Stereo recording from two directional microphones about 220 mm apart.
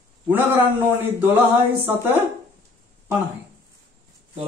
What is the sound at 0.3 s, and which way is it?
A man's voice, 10° right (ahead or behind).